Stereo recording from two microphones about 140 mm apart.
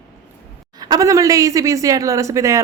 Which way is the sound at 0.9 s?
25° right (ahead or behind).